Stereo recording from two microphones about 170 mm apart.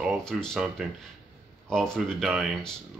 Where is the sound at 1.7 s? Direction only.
5° left (ahead or behind).